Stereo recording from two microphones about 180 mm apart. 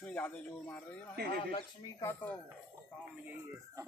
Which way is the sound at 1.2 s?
60° right (ahead or behind).